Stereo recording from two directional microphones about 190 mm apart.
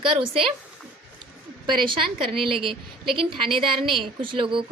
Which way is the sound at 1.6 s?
25° right (ahead or behind).